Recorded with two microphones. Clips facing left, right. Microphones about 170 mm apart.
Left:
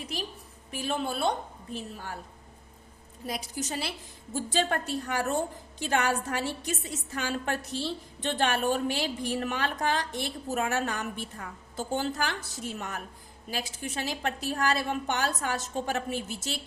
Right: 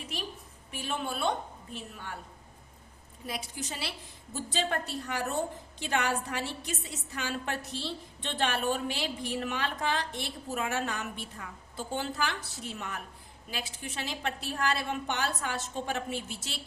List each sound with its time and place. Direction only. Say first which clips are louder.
0.1 s a woman's voice: left 1 dB; 35° left (ahead or behind)
3.2 s a woman's voice: left 4 dB; 40° left (ahead or behind)